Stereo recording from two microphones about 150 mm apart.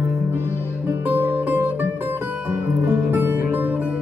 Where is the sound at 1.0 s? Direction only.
15° right (ahead or behind).